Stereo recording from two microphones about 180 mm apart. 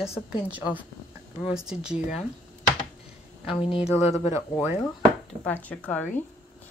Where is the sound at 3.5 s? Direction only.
30° left (ahead or behind).